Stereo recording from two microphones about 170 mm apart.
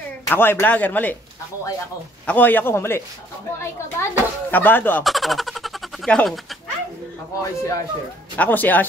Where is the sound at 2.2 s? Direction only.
10° left (ahead or behind).